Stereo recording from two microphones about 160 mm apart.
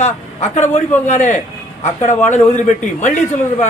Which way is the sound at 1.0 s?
50° left (ahead or behind).